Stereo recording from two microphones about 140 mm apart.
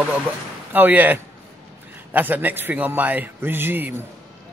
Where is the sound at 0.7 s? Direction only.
15° right (ahead or behind).